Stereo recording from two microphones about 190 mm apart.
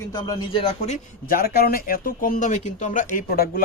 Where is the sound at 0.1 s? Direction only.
20° left (ahead or behind).